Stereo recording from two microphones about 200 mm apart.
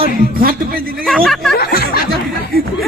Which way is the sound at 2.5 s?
50° right (ahead or behind).